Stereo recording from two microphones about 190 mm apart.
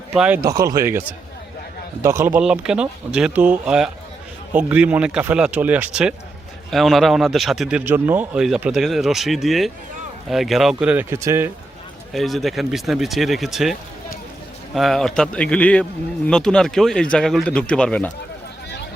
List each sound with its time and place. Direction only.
0.1 s speech: 5° right (ahead or behind)
0.4 s a man's voice: 20° right (ahead or behind)
12.1 s a man's voice: centre (ahead or behind)
14.8 s a man's voice: centre (ahead or behind)